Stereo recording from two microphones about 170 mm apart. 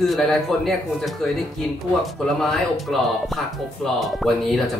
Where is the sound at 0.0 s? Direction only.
Centre (ahead or behind).